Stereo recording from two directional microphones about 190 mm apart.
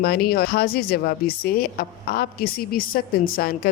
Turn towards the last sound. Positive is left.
turn(degrees=50)  # may be behind; listen again after turning